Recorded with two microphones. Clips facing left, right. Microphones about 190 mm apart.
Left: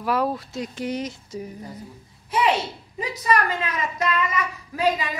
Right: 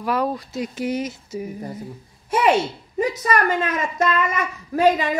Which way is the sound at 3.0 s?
45° right (ahead or behind).